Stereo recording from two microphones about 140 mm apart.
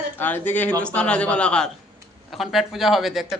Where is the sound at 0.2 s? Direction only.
15° left (ahead or behind).